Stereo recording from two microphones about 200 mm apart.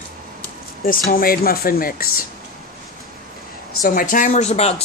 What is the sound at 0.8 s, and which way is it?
Speech, 45° left (ahead or behind).